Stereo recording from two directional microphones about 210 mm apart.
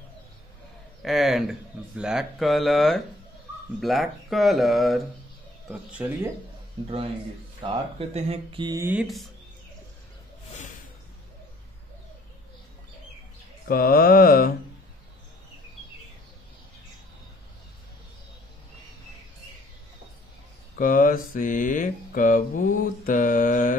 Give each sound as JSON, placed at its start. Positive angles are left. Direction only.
{"t": 1.0, "sound": "speech", "side_deg": 0}
{"t": 7.6, "sound": "speech", "side_deg": -30}
{"t": 13.7, "sound": "mantra", "side_deg": 45}
{"t": 20.7, "sound": "mantra", "side_deg": 40}